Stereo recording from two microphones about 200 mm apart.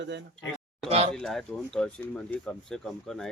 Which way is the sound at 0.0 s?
60° right (ahead or behind).